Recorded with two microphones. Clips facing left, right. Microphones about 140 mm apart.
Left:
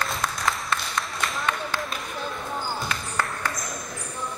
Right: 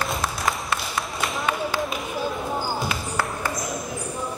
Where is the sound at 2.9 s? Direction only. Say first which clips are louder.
Right 2 dB; 10° right (ahead or behind).